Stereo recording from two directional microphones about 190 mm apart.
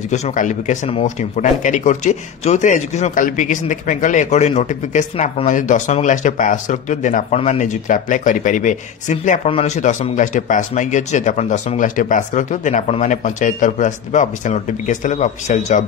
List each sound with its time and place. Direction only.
0.1 s speech: 40° left (ahead or behind)